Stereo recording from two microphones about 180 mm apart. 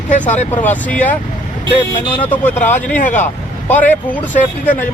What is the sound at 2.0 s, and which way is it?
Speech, 25° left (ahead or behind).